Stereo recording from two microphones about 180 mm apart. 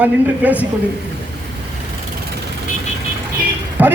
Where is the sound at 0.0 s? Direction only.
10° right (ahead or behind).